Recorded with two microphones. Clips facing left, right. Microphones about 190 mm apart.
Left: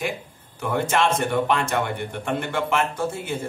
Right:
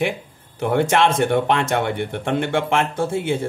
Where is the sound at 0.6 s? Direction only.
60° right (ahead or behind).